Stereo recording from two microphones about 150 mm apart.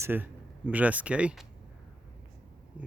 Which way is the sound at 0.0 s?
15° right (ahead or behind).